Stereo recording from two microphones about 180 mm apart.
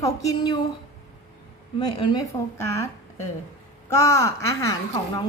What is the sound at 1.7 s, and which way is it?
A woman's voice, 25° left (ahead or behind).